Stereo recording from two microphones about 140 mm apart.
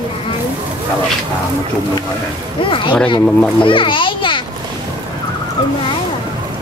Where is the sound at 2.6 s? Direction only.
35° left (ahead or behind).